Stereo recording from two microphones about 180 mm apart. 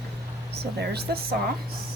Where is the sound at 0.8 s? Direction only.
65° right (ahead or behind).